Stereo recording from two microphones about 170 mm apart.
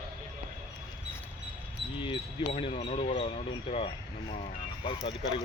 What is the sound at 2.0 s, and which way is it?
Speech, 30° left (ahead or behind).